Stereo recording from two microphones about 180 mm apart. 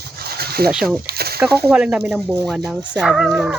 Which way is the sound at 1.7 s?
5° right (ahead or behind).